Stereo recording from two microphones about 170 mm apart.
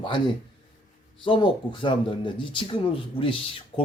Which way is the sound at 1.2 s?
30° left (ahead or behind).